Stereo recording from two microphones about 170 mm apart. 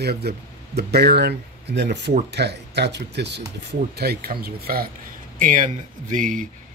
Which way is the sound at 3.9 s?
70° right (ahead or behind).